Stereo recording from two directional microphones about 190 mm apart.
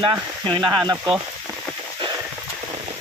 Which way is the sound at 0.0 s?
25° right (ahead or behind).